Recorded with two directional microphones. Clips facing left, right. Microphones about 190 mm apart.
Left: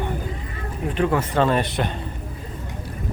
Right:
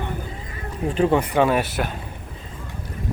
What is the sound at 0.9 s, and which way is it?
Speech, 25° right (ahead or behind).